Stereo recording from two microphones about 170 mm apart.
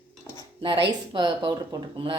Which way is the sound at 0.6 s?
30° right (ahead or behind).